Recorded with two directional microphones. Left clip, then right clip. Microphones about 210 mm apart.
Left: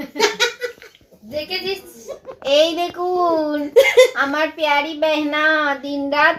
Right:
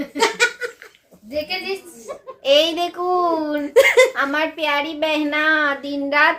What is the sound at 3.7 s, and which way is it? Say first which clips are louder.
Speech: left 1 dB; 30° right (ahead or behind).